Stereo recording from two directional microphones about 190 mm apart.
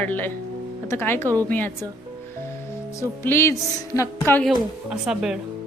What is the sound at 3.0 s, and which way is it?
Speech, 15° left (ahead or behind).